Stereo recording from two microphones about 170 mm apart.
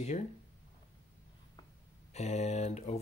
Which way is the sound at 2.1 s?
40° left (ahead or behind).